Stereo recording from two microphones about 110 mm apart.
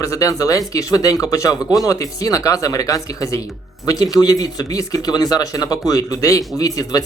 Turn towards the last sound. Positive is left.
turn(degrees=35)  # may be behind; listen again after turning